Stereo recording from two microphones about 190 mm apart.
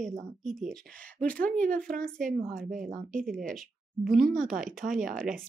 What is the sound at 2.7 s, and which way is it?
Speech, 45° right (ahead or behind).